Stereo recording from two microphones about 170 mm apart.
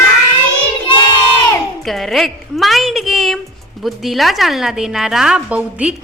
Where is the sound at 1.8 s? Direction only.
Centre (ahead or behind).